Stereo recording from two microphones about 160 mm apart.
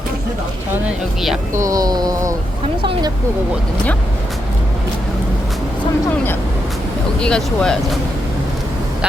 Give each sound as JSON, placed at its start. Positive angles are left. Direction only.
{"t": 1.5, "sound": "speech", "side_deg": -20}
{"t": 7.2, "sound": "speech", "side_deg": 5}